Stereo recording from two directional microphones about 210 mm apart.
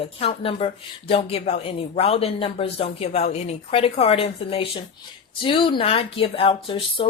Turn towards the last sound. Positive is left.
turn(degrees=25)  # may be behind; listen again after turning